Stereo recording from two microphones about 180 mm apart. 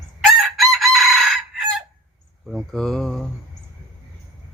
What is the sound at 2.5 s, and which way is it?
Speech, centre (ahead or behind).